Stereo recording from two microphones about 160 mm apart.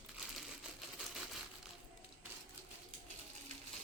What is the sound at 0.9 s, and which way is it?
Typewriter, centre (ahead or behind).